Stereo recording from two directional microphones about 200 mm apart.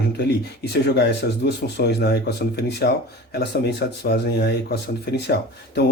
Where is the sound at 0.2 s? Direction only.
55° left (ahead or behind).